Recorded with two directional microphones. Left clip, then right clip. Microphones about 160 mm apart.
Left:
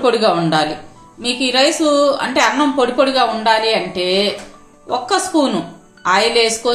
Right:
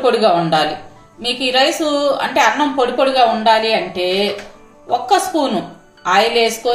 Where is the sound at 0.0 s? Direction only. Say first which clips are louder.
Right 1 dB; 45° left (ahead or behind).